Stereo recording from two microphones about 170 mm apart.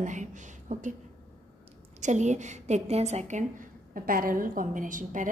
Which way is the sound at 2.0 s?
45° right (ahead or behind).